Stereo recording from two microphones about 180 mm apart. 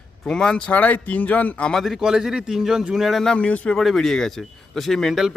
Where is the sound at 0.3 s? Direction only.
5° left (ahead or behind).